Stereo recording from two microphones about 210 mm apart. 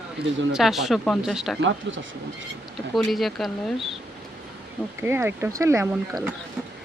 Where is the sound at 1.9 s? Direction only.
60° right (ahead or behind).